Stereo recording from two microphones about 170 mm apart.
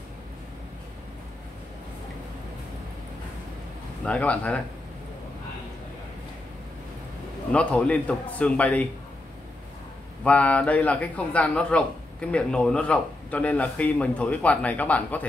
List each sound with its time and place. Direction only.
4.0 s a man's voice: 5° left (ahead or behind)
7.5 s a man's voice: 5° left (ahead or behind)
10.2 s a man's voice: 10° left (ahead or behind)